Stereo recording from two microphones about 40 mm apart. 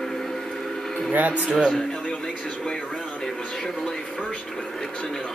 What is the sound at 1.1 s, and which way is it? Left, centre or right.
Speech, right.